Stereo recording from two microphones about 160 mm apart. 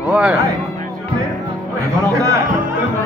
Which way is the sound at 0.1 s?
5° right (ahead or behind).